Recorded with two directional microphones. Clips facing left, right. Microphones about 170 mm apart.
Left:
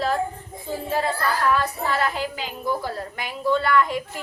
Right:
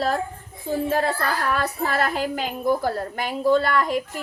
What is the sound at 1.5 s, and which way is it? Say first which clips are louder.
A woman's voice: even; 45° right (ahead or behind).